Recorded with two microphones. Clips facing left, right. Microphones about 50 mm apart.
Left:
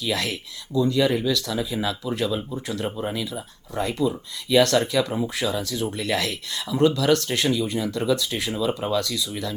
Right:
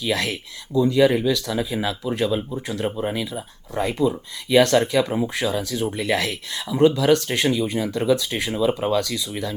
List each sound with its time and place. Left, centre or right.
0.0 s speech: centre
2.9 s speech: centre